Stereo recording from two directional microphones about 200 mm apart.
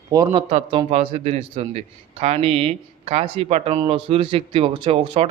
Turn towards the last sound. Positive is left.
turn(degrees=-25)  # may be behind; listen again after turning